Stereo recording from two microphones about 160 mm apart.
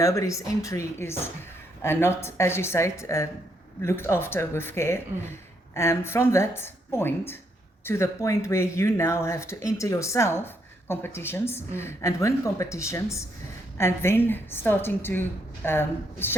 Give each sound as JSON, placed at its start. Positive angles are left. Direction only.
{"t": 0.0, "sound": "a woman's voice", "side_deg": 20}